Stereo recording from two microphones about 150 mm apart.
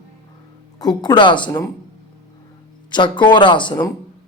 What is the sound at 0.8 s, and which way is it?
Speech, 25° left (ahead or behind).